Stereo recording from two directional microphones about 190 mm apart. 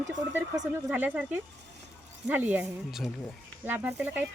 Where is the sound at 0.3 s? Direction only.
15° right (ahead or behind).